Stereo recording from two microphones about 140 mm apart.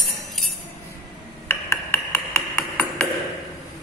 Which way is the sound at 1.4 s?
20° left (ahead or behind).